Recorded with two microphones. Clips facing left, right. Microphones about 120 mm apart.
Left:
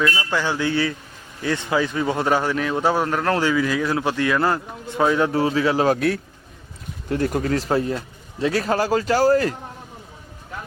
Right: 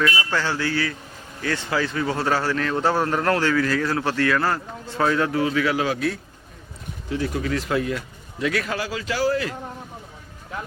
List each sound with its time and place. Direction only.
0.0 s a sound: 5° right (ahead or behind)
0.3 s a man's voice: 15° left (ahead or behind)
5.3 s a man's voice: 30° left (ahead or behind)
7.1 s a man's voice: 50° left (ahead or behind)